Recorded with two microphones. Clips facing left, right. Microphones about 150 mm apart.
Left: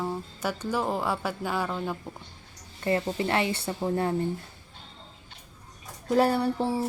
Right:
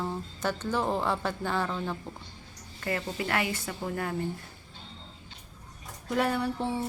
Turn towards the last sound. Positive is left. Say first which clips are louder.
# left 4 dB
turn(degrees=35)  # may be behind; listen again after turning